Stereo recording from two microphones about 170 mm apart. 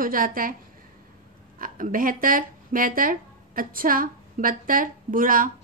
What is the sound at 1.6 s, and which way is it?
A woman's voice, 55° right (ahead or behind).